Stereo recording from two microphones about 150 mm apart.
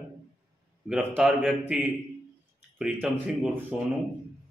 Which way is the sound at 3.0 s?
10° right (ahead or behind).